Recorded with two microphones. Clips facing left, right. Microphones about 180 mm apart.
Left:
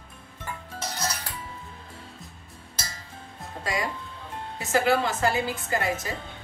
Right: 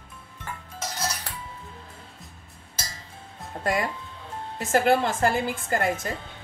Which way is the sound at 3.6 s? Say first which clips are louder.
Right 4 dB; 55° right (ahead or behind).